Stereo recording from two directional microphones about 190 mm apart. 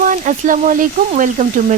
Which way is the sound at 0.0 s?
40° right (ahead or behind).